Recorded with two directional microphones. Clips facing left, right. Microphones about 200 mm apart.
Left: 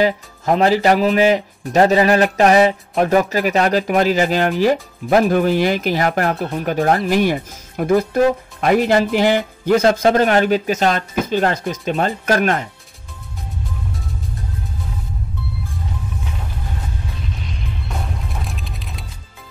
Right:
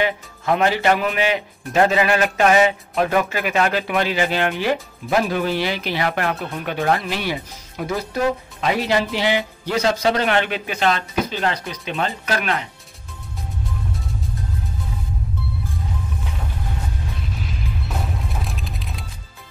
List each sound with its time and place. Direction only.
0.0 s speech: 35° left (ahead or behind)
17.4 s music: 5° right (ahead or behind)